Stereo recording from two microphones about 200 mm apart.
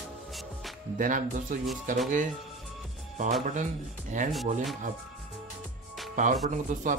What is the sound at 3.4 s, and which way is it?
Speech, 40° right (ahead or behind).